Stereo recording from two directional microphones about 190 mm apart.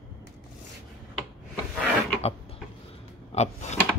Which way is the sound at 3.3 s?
35° left (ahead or behind).